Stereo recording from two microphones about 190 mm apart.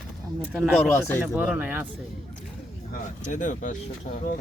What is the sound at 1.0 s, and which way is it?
Speech, 15° left (ahead or behind).